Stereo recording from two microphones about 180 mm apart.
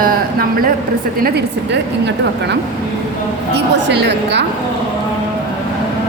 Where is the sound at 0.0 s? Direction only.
55° right (ahead or behind).